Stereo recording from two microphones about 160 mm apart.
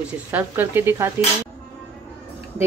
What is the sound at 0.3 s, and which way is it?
Speech, 15° right (ahead or behind).